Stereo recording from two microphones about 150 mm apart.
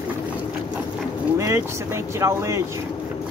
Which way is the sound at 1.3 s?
20° right (ahead or behind).